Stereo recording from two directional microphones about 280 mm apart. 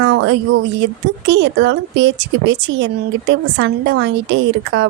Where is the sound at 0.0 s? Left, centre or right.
Right.